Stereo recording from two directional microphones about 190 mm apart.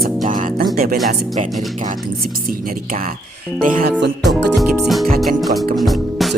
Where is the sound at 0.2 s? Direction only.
45° right (ahead or behind).